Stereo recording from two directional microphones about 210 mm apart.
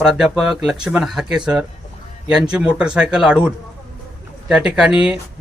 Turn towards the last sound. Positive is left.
turn(degrees=-5)  # may be behind; listen again after turning